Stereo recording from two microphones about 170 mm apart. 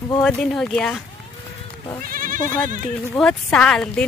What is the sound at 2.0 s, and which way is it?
Speech, 55° right (ahead or behind).